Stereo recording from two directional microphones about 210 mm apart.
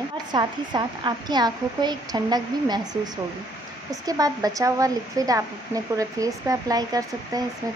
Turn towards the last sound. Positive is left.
turn(degrees=-15)  # may be behind; listen again after turning